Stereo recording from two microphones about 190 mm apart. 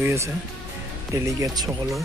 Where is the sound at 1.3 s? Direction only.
15° right (ahead or behind).